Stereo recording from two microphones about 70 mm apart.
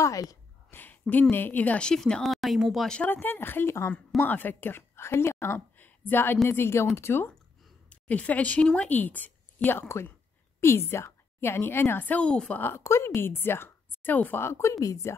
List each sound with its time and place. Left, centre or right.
0.0 s a sound: left
0.7 s a sound: left
1.3 s speech: left; by 2.9 s centre
3.1 s a woman's voice: left
7.9 s a woman's voice: left
12.6 s a woman's voice: left
14.4 s a woman's voice: left